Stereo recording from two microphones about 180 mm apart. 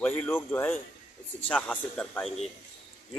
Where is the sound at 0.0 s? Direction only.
10° left (ahead or behind).